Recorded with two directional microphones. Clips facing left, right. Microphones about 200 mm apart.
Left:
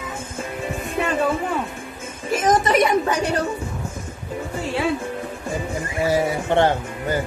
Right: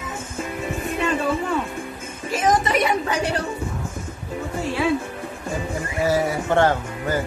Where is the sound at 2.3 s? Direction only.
45° left (ahead or behind).